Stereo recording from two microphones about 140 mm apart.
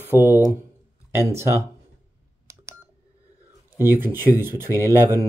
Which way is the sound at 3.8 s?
15° right (ahead or behind).